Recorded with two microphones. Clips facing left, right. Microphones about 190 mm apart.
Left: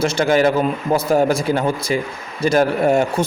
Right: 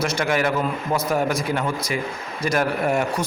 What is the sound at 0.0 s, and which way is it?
Speech, 25° left (ahead or behind).